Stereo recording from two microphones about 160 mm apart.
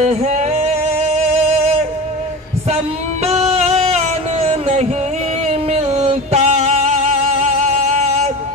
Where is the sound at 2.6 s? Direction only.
40° right (ahead or behind).